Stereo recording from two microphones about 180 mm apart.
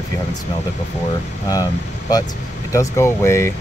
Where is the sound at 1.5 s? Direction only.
20° left (ahead or behind).